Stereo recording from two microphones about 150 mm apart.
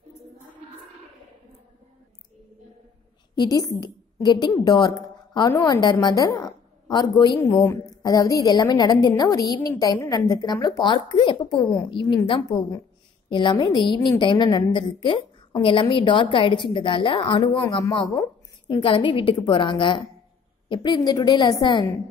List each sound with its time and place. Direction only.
3.3 s a woman's voice: 25° left (ahead or behind)
18.7 s a woman's voice: 35° left (ahead or behind)